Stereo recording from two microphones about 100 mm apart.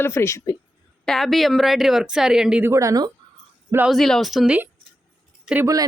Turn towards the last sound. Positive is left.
turn(degrees=-5)  # may be behind; listen again after turning